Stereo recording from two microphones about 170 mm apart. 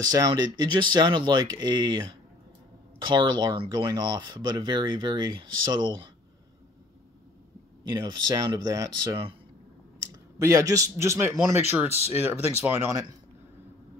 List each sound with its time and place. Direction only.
0.0 s speech: 20° right (ahead or behind)
7.8 s speech: 25° right (ahead or behind)
10.4 s speech: 20° right (ahead or behind)